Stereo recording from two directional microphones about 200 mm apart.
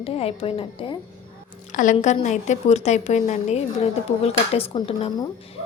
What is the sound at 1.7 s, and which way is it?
A woman's voice, 40° left (ahead or behind).